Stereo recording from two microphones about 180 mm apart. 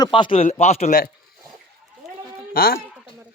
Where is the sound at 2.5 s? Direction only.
55° left (ahead or behind).